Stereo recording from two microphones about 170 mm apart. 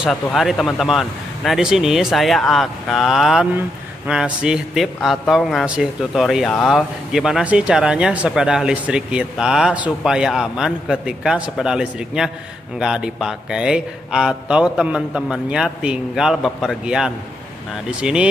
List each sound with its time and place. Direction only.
0.0 s a man's voice: centre (ahead or behind)